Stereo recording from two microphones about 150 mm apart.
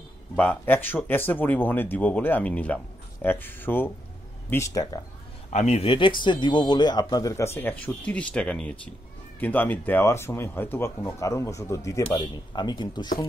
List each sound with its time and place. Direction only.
0.4 s speech: 10° left (ahead or behind)
5.5 s speech: 50° left (ahead or behind); by 13.1 s 30° left (ahead or behind)